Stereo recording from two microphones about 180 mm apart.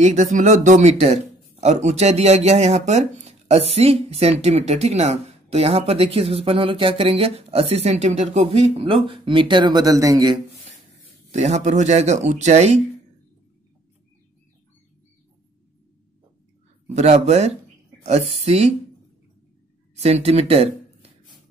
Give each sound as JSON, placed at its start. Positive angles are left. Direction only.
{"t": 0.0, "sound": "speech", "side_deg": -40}
{"t": 11.3, "sound": "speech", "side_deg": -40}
{"t": 16.9, "sound": "speech", "side_deg": -35}
{"t": 20.0, "sound": "speech", "side_deg": -35}